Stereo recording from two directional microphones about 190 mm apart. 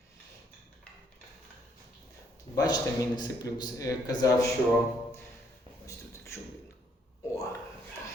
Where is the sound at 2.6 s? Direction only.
20° left (ahead or behind).